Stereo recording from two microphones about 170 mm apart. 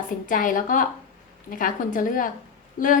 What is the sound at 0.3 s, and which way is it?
A woman's voice, 50° left (ahead or behind).